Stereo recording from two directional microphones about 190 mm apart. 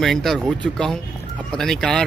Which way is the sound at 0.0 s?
Centre (ahead or behind).